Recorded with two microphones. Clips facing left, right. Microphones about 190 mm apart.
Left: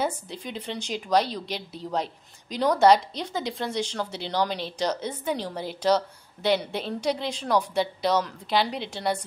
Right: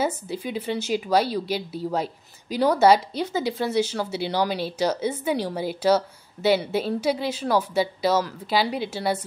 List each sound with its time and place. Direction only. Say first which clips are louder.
0.0 s a woman's voice: right 3 dB; 5° right (ahead or behind)